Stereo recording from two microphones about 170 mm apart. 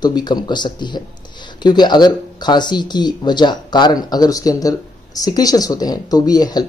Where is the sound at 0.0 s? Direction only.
25° left (ahead or behind).